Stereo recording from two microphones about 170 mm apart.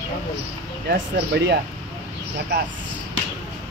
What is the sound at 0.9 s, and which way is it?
Speech, 80° right.